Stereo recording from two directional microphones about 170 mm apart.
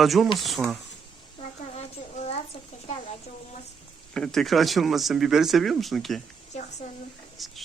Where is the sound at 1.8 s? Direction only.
40° left (ahead or behind).